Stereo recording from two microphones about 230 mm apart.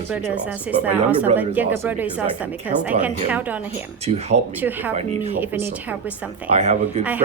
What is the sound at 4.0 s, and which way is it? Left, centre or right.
Speech, right.